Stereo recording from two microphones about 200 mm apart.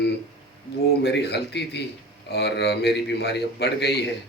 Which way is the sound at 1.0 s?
55° left (ahead or behind).